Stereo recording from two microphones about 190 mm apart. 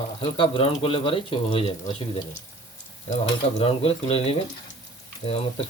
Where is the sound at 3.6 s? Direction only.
30° left (ahead or behind).